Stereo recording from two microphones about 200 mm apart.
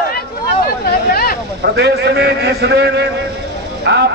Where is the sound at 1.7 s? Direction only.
55° right (ahead or behind).